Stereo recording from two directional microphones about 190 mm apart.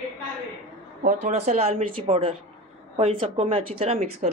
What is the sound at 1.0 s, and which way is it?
A woman's voice, 35° right (ahead or behind).